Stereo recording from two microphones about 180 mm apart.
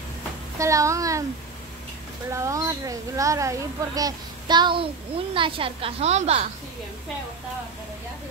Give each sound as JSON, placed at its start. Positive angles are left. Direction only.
{"t": 0.6, "sound": "speech", "side_deg": -15}
{"t": 2.3, "sound": "a woman's voice", "side_deg": -15}